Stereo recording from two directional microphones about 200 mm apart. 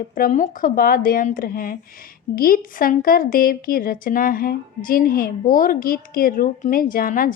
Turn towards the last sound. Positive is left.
turn(degrees=45)  # may be behind; listen again after turning